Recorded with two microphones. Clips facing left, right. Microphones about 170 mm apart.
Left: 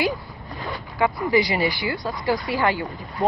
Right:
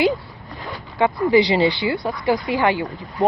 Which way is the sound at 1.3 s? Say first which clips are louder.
Right 5 dB; 25° right (ahead or behind).